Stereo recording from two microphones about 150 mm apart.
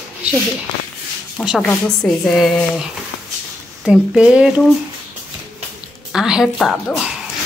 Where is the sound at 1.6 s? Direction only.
5° left (ahead or behind).